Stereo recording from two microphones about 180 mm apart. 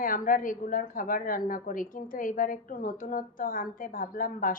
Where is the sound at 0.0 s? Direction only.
50° left (ahead or behind).